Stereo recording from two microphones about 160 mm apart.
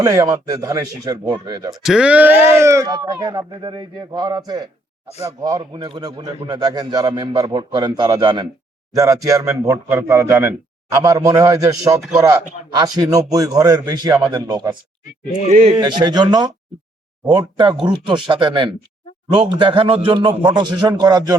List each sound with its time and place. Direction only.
0.0 s a man's voice: 20° right (ahead or behind)
1.8 s a man's voice: 5° right (ahead or behind); by 14.8 s 25° right (ahead or behind)
15.4 s speech: 45° right (ahead or behind)
15.8 s a man's voice: 25° right (ahead or behind)